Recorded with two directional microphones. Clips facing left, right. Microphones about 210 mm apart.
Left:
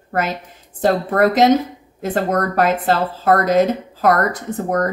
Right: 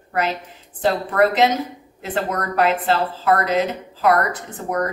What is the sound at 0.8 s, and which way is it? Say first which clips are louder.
A woman's voice: left 3 dB; 45° left (ahead or behind).